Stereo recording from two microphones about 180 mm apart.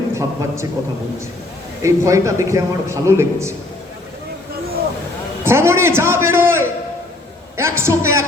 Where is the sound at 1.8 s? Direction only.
15° right (ahead or behind).